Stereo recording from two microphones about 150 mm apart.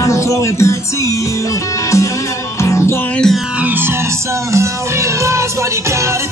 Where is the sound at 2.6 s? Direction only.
20° left (ahead or behind).